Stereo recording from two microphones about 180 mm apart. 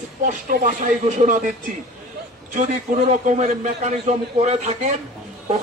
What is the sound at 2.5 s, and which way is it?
A man's voice, 45° right (ahead or behind).